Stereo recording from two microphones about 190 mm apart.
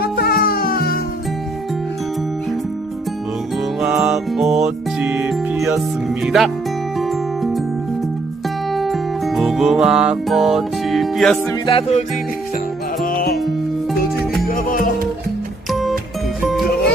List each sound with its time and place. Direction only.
0.0 s music: 55° left (ahead or behind)
3.8 s music: 5° right (ahead or behind)
6.2 s speech: centre (ahead or behind)
8.7 s music: centre (ahead or behind)
11.6 s music: 30° left (ahead or behind)
13.0 s music: 50° left (ahead or behind)
14.5 s music: 45° left (ahead or behind)